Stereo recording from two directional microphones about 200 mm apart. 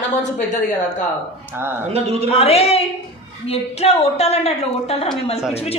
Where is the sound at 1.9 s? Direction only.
30° right (ahead or behind).